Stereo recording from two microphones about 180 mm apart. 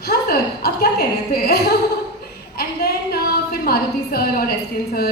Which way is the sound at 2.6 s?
60° left (ahead or behind).